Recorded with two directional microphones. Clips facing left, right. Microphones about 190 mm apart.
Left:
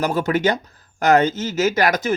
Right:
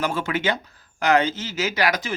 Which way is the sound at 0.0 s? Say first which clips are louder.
Left 5 dB; 40° left (ahead or behind).